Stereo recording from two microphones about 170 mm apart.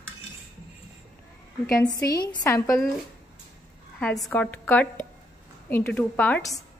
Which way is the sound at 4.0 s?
5° left (ahead or behind).